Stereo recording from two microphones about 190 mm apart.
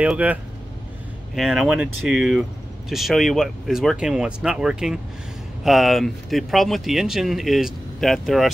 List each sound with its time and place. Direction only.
0.0 s speech: 10° right (ahead or behind)